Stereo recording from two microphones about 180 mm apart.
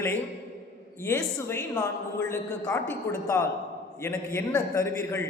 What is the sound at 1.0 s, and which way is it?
A woman's voice, 15° left (ahead or behind).